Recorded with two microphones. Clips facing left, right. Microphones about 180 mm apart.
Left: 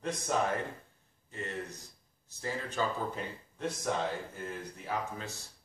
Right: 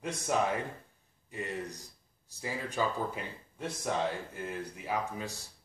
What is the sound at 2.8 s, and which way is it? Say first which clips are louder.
Speech: right 1 dB; 10° right (ahead or behind).